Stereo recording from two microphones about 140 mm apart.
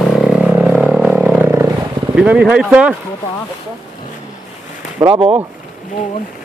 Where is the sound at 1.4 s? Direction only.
15° right (ahead or behind).